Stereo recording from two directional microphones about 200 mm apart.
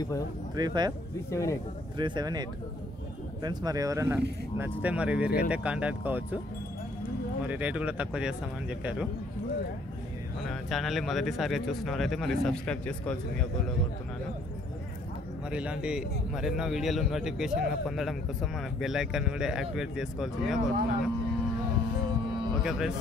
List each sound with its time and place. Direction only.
0.6 s speech: 20° right (ahead or behind)
1.3 s speech: 15° left (ahead or behind)
2.0 s speech: 20° right (ahead or behind)
3.4 s speech: 20° right (ahead or behind)
7.4 s a man's voice: 5° right (ahead or behind)
10.5 s a man's voice: centre (ahead or behind)
15.5 s a man's voice: 5° right (ahead or behind)
22.6 s a man's voice: 5° right (ahead or behind)